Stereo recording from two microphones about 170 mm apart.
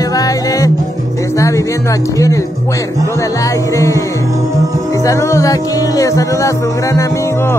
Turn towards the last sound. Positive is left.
turn(degrees=20)  # may be behind; listen again after turning